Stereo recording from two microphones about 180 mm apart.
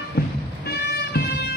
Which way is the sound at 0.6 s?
65° left (ahead or behind).